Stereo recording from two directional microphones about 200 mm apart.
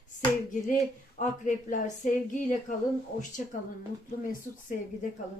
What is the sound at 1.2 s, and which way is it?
Speech, 40° left (ahead or behind).